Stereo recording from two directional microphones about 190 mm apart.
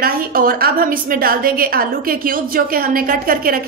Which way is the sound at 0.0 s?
50° right (ahead or behind).